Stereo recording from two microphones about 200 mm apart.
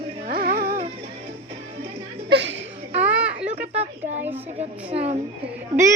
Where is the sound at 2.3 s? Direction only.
65° right (ahead or behind).